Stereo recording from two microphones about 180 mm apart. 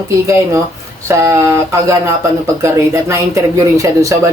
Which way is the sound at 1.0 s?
15° right (ahead or behind).